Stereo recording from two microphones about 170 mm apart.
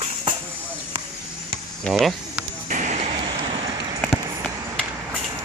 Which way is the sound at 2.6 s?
45° right (ahead or behind).